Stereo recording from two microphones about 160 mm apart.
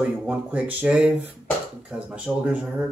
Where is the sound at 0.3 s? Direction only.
10° right (ahead or behind).